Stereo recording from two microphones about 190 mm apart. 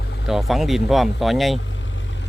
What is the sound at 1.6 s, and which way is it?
Vehicle, 80° left.